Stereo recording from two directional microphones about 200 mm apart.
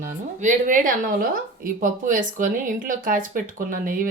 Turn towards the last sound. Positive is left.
turn(degrees=-45)  # may be behind; listen again after turning